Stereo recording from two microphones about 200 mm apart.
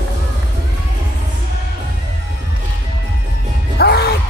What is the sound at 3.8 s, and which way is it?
Music, 55° left (ahead or behind).